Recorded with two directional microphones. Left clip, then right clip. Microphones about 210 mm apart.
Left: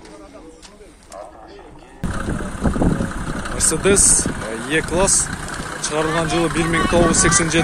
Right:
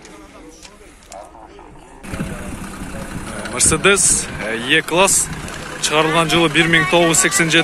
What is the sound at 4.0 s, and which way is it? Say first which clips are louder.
Speech: left 1 dB; 20° right (ahead or behind).